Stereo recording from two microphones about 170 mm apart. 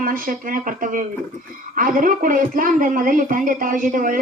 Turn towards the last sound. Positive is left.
turn(degrees=-55)  # may be behind; listen again after turning